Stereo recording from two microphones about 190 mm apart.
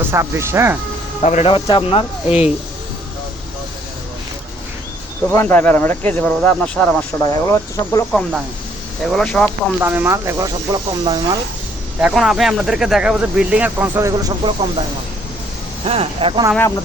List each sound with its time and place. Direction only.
0.1 s speech: 15° right (ahead or behind)
1.2 s speech: 35° left (ahead or behind)
5.3 s speech: 10° left (ahead or behind)
7.2 s speech: 20° left (ahead or behind)
9.0 s speech: centre (ahead or behind)
9.8 s speech: 10° right (ahead or behind)
11.9 s speech: 5° right (ahead or behind); by 14.8 s 25° right (ahead or behind)
15.9 s speech: 30° right (ahead or behind)